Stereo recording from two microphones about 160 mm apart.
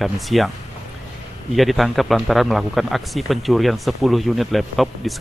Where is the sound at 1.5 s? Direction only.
Centre (ahead or behind).